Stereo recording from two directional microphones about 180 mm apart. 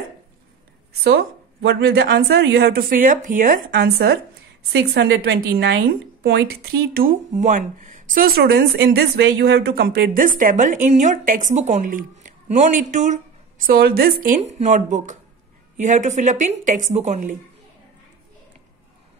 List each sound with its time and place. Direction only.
1.0 s a woman's voice: 65° right (ahead or behind); by 17.4 s 40° right (ahead or behind)